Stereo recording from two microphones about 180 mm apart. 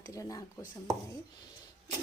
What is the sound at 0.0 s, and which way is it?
Speech, 20° left (ahead or behind).